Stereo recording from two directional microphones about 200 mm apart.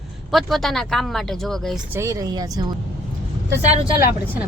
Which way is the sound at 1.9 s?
15° right (ahead or behind).